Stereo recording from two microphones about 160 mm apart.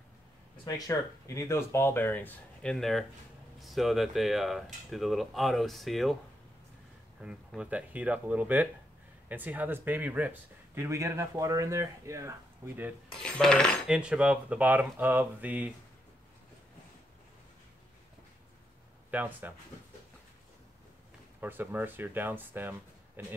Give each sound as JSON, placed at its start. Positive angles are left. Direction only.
{"t": 0.7, "sound": "speech", "side_deg": 20}
{"t": 7.2, "sound": "speech", "side_deg": -5}
{"t": 13.2, "sound": "speech", "side_deg": 5}
{"t": 19.0, "sound": "speech", "side_deg": -10}
{"t": 21.4, "sound": "speech", "side_deg": -10}